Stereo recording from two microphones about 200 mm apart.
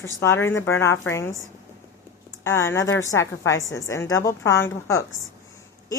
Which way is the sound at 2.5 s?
15° left (ahead or behind).